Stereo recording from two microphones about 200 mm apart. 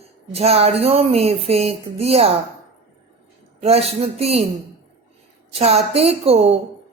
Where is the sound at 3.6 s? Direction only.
30° right (ahead or behind).